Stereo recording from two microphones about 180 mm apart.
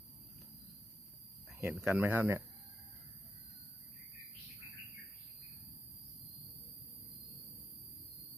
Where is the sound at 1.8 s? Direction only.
5° right (ahead or behind).